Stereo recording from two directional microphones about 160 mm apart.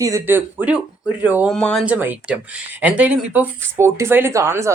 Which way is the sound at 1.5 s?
5° left (ahead or behind).